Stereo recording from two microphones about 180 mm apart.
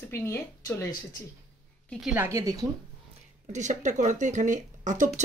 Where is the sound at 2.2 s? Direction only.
15° right (ahead or behind).